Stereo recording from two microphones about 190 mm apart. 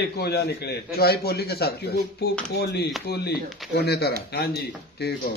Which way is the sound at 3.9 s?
55° left (ahead or behind).